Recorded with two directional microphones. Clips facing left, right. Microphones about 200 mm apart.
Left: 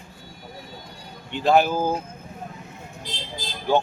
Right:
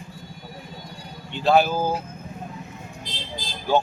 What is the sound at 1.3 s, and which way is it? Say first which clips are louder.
Speech: even; 15° left (ahead or behind).